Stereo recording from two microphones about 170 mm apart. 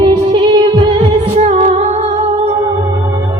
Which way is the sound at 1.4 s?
40° right (ahead or behind).